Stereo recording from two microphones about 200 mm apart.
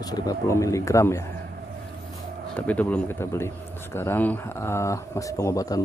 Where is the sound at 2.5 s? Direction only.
5° left (ahead or behind).